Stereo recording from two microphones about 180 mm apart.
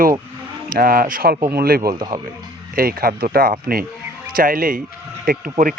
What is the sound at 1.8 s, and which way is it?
Speech, 25° right (ahead or behind).